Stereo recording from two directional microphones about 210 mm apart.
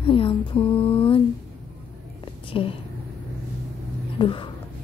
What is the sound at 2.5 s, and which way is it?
Speech, 25° left (ahead or behind).